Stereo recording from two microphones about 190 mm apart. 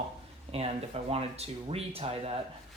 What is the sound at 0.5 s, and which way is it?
Speech, 30° right (ahead or behind).